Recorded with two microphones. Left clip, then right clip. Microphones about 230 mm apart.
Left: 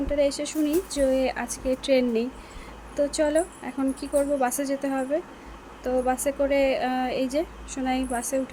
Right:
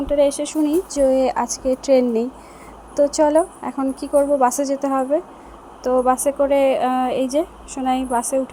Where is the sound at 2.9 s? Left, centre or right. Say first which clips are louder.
Right 8 dB; centre.